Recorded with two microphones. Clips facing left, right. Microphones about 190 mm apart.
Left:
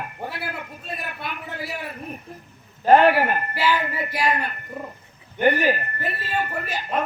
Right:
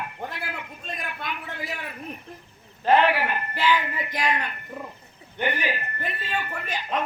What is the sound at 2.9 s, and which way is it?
Speech, 45° left (ahead or behind).